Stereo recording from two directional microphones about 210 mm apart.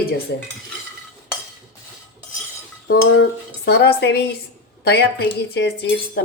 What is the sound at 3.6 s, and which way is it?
Speech, 50° left (ahead or behind).